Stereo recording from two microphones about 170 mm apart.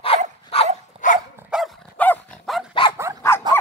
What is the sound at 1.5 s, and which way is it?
Dog, 5° right (ahead or behind).